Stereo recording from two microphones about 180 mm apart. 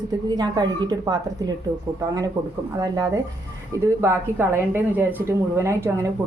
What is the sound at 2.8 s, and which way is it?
A woman's voice, 20° right (ahead or behind).